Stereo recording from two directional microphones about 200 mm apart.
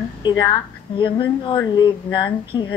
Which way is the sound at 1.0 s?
25° left (ahead or behind).